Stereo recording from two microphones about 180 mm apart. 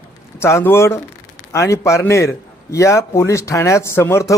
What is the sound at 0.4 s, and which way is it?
A man's voice, 15° left (ahead or behind).